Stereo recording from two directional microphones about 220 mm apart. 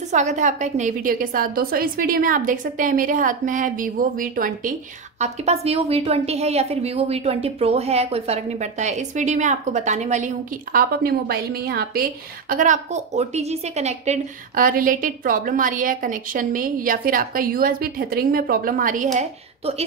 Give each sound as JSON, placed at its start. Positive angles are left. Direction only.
{"t": 0.1, "sound": "a woman's voice", "side_deg": -30}